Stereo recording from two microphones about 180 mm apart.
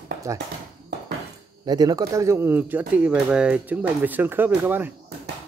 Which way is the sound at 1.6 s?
20° right (ahead or behind).